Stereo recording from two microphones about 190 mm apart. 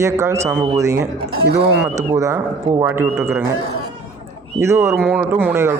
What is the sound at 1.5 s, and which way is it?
Speech, 60° right (ahead or behind).